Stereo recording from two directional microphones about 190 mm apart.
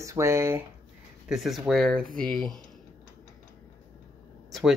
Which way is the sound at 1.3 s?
Centre (ahead or behind).